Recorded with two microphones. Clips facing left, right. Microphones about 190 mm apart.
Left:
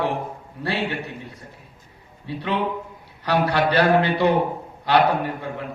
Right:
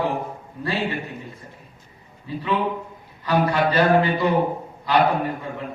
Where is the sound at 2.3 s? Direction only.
75° left (ahead or behind).